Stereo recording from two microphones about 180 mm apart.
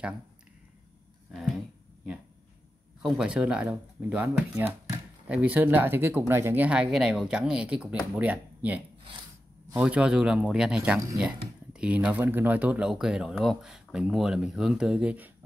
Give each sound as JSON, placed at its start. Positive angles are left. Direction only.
{"t": 3.0, "sound": "speech", "side_deg": 0}